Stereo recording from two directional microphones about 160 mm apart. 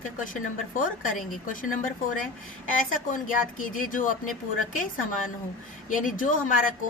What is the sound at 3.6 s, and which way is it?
Speech, 55° left (ahead or behind).